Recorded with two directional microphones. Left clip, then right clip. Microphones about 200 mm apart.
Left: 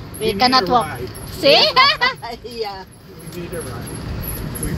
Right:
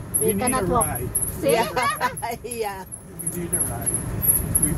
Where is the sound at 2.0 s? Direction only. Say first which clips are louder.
Left 5 dB; 30° right (ahead or behind).